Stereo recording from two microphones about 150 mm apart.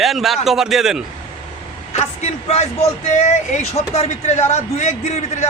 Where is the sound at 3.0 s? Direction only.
50° left (ahead or behind).